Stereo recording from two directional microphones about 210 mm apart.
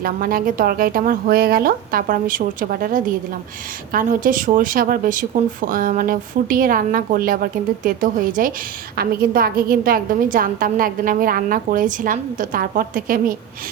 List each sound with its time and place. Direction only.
0.0 s a woman's voice: 45° right (ahead or behind)